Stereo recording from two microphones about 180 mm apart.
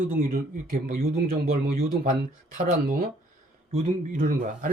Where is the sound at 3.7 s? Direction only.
45° right (ahead or behind).